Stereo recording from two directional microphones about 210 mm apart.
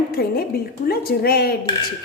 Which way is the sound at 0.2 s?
45° left (ahead or behind).